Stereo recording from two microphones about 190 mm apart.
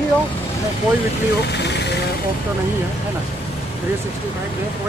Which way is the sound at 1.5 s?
65° left (ahead or behind).